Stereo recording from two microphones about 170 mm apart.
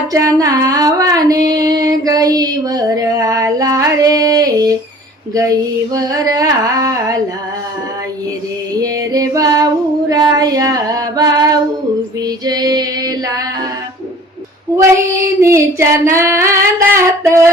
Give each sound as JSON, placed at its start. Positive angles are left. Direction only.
{"t": 0.1, "sound": "child singing", "side_deg": -20}
{"t": 8.8, "sound": "female singing", "side_deg": -20}
{"t": 10.1, "sound": "child singing", "side_deg": -20}
{"t": 15.4, "sound": "female singing", "side_deg": -15}